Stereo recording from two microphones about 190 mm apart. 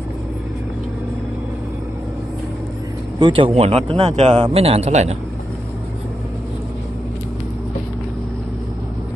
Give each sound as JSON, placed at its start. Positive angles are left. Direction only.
{"t": 3.2, "sound": "speech", "side_deg": -25}